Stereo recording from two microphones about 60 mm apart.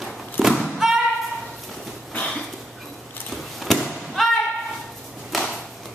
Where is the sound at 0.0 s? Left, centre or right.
Centre.